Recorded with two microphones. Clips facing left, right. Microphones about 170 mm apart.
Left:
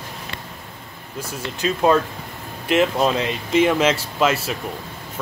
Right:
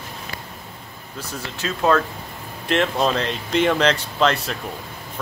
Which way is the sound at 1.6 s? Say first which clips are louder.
Left 2 dB; 15° left (ahead or behind).